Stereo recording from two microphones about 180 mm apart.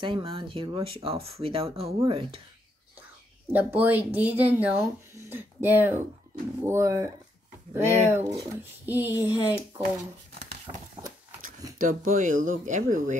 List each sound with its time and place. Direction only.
0.0 s speech: 30° right (ahead or behind)
3.5 s speech: 10° right (ahead or behind)
7.8 s speech: 40° right (ahead or behind)
8.1 s speech: 15° right (ahead or behind)
11.8 s speech: 45° right (ahead or behind)